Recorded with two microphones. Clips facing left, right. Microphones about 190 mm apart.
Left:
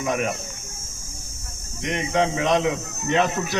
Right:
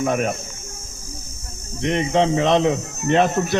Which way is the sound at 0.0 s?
50° right (ahead or behind).